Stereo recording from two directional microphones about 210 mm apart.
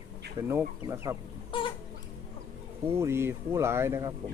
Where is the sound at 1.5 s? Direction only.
25° left (ahead or behind).